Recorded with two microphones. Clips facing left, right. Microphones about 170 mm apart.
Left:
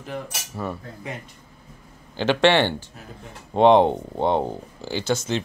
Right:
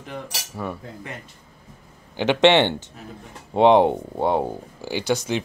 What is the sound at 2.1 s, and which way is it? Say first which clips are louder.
Speech: right 2 dB; 20° right (ahead or behind).